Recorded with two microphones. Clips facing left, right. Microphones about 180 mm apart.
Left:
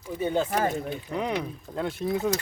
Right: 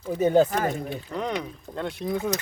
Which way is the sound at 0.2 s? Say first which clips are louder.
Right 7 dB; 40° right (ahead or behind).